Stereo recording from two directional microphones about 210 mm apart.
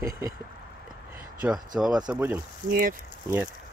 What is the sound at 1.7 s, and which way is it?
Speech, 5° right (ahead or behind).